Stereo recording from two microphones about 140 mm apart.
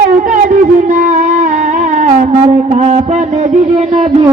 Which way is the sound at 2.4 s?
50° right (ahead or behind).